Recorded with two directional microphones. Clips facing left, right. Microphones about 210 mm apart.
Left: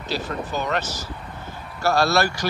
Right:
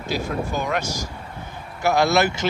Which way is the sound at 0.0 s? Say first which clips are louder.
Right 2 dB; 10° right (ahead or behind).